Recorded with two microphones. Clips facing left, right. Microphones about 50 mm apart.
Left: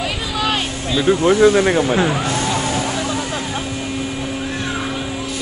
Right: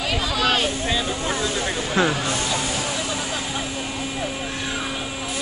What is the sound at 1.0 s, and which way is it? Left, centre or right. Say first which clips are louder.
Speech: left 13 dB; left.